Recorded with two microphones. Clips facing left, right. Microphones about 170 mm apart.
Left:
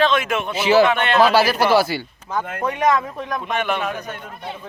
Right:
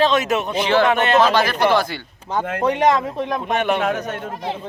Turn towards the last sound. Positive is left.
turn(degrees=-40)  # may be behind; listen again after turning